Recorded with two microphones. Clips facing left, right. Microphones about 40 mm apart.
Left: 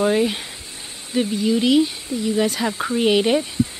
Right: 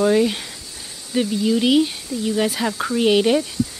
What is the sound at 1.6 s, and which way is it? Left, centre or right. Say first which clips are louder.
Speech: even; centre.